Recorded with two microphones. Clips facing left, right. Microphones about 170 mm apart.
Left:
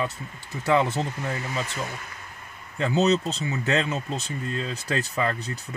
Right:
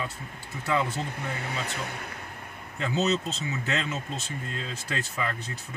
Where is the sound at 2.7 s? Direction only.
35° left (ahead or behind).